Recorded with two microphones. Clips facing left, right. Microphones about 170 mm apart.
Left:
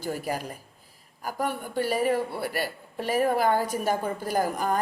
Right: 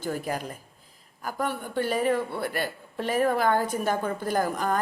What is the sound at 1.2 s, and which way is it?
Speech, 40° left (ahead or behind).